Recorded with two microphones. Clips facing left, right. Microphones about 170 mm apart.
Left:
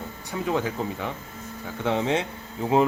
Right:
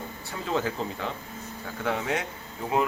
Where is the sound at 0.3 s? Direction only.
15° left (ahead or behind).